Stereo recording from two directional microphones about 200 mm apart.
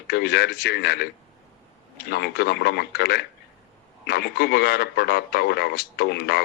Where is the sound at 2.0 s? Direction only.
55° left (ahead or behind).